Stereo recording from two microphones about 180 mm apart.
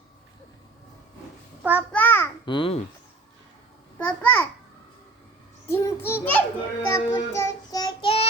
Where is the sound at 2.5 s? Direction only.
30° left (ahead or behind).